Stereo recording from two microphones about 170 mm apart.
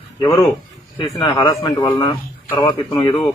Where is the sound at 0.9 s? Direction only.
25° left (ahead or behind).